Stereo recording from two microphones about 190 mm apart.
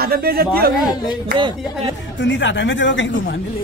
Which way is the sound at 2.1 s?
70° left (ahead or behind).